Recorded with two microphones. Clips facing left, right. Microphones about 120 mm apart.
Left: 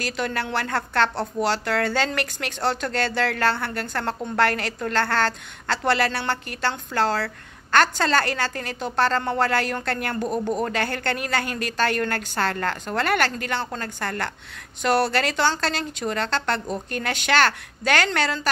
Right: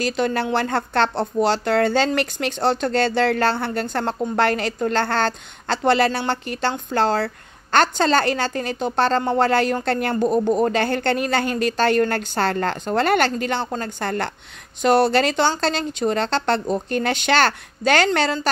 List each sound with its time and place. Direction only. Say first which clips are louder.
0.0 s a woman's voice: right 6 dB; 25° right (ahead or behind)